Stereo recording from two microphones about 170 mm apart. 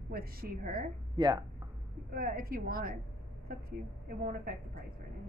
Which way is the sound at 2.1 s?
60° right (ahead or behind).